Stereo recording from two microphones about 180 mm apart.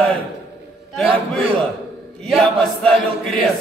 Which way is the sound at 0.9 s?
Centre (ahead or behind).